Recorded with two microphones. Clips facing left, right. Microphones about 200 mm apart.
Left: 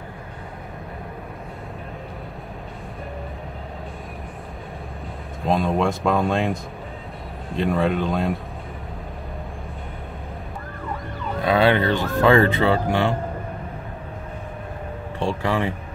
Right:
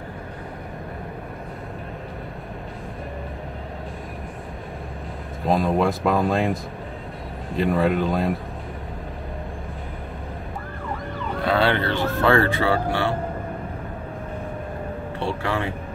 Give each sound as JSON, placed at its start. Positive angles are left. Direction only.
{"t": 5.4, "sound": "speech", "side_deg": 0}
{"t": 11.4, "sound": "speech", "side_deg": 15}
{"t": 15.1, "sound": "speech", "side_deg": 15}